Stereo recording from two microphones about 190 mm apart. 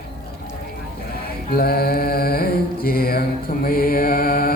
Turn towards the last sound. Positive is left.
turn(degrees=50)  # may be behind; listen again after turning